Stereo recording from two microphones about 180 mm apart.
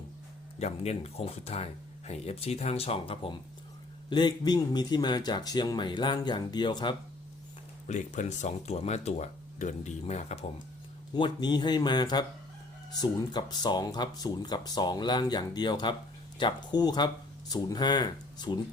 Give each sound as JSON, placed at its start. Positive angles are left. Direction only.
{"t": 0.6, "sound": "speech", "side_deg": 35}
{"t": 7.9, "sound": "speech", "side_deg": 45}
{"t": 11.1, "sound": "speech", "side_deg": 25}